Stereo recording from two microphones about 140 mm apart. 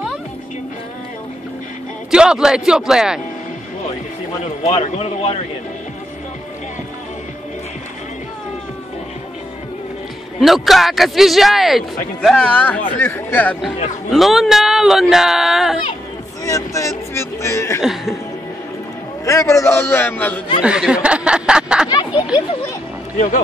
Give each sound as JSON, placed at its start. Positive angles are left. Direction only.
{"t": 2.0, "sound": "speech", "side_deg": -5}
{"t": 4.6, "sound": "speech", "side_deg": 45}
{"t": 10.4, "sound": "speech", "side_deg": 0}
{"t": 14.1, "sound": "speech", "side_deg": 0}
{"t": 16.4, "sound": "speech", "side_deg": 25}
{"t": 19.2, "sound": "a man's voice", "side_deg": 20}
{"t": 20.6, "sound": "speech", "side_deg": -5}
{"t": 21.8, "sound": "a sound", "side_deg": 30}